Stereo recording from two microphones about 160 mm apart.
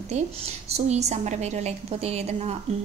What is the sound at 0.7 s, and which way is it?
A woman's voice, 40° right (ahead or behind).